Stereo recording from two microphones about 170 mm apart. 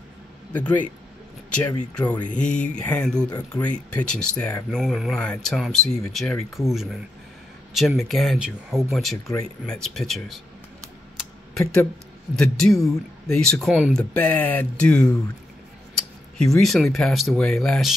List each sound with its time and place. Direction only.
0.5 s speech: 10° left (ahead or behind)
11.6 s speech: 15° left (ahead or behind)
12.4 s speech: 5° left (ahead or behind)
16.5 s speech: centre (ahead or behind)